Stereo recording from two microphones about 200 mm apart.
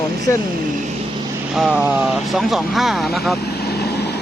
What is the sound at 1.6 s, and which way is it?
Speech, 5° right (ahead or behind).